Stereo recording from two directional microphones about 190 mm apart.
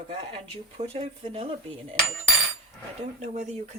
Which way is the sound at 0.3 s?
30° right (ahead or behind).